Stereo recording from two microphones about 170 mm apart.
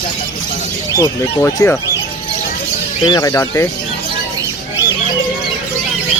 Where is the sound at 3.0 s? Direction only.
20° left (ahead or behind).